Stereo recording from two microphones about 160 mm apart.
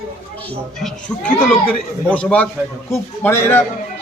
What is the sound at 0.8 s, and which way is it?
Speech, 5° left (ahead or behind).